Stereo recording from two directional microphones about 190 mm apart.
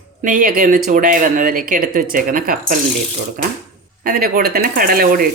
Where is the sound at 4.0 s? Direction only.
50° right (ahead or behind).